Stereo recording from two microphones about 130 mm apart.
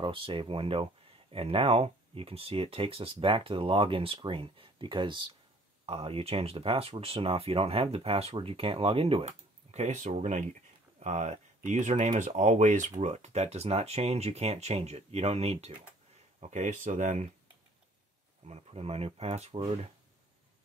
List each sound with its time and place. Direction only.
0.0 s speech: 40° right (ahead or behind)
16.3 s speech: 65° right (ahead or behind)
18.5 s speech: 50° right (ahead or behind)